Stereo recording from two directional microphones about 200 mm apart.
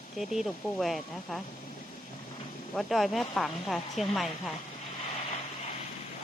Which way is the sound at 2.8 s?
Centre (ahead or behind).